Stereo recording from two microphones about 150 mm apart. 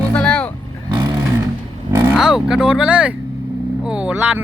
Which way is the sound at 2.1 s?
5° right (ahead or behind).